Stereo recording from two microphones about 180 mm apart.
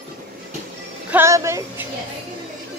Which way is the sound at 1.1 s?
15° right (ahead or behind).